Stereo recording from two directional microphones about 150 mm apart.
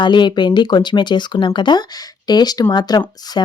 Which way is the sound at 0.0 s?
30° left (ahead or behind).